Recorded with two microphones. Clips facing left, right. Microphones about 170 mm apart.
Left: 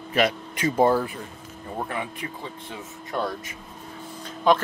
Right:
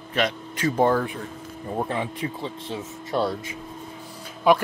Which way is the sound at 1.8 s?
25° right (ahead or behind).